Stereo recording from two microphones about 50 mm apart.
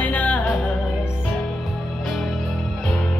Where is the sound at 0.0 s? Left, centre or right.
Left.